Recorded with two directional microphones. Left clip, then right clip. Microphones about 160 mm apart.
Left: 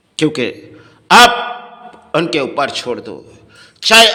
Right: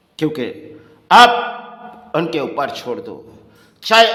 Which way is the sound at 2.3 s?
5° left (ahead or behind).